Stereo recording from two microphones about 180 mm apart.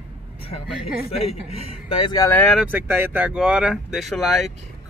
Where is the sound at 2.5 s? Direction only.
5° right (ahead or behind).